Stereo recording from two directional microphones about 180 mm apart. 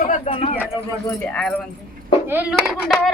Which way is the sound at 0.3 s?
30° left (ahead or behind).